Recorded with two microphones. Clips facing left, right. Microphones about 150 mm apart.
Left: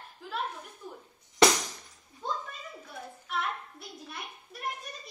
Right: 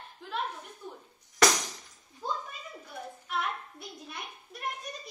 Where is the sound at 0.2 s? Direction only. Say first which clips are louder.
Even; 5° left (ahead or behind).